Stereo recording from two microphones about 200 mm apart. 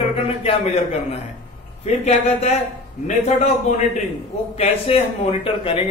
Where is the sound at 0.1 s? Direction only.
30° left (ahead or behind).